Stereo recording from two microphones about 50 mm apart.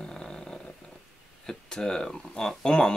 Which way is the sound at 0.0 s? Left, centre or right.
Centre.